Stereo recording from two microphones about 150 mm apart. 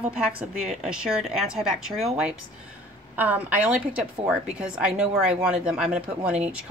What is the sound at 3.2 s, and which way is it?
A woman's voice, 10° right (ahead or behind).